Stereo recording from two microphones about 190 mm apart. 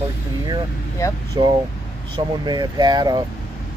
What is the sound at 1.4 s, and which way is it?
Speech, 25° right (ahead or behind).